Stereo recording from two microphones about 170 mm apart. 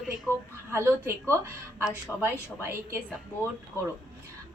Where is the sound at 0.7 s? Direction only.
15° right (ahead or behind).